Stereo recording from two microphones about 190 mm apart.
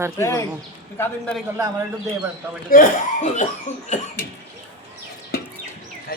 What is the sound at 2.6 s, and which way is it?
Speech, 45° left (ahead or behind).